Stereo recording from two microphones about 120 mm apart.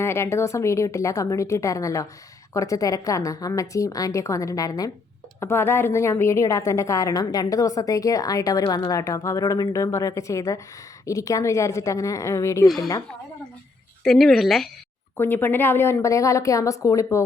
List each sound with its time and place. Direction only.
0.0 s a woman's voice: 20° left (ahead or behind)
12.6 s speech: centre (ahead or behind)
14.0 s speech: 5° left (ahead or behind)
15.2 s a woman's voice: 15° left (ahead or behind)